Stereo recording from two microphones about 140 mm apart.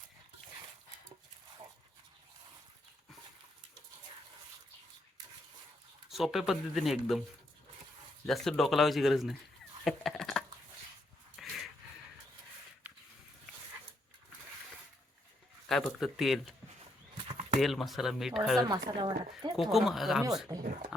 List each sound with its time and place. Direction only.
6.1 s speech: centre (ahead or behind)
8.3 s speech: centre (ahead or behind)
9.8 s a sound: centre (ahead or behind)
15.7 s speech: centre (ahead or behind)
17.6 s speech: centre (ahead or behind)
18.7 s speech: 30° right (ahead or behind)
19.5 s speech: centre (ahead or behind)
20.5 s speech: 25° right (ahead or behind)